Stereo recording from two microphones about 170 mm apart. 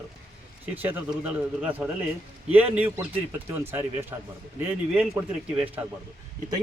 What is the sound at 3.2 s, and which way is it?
Speech, 10° right (ahead or behind).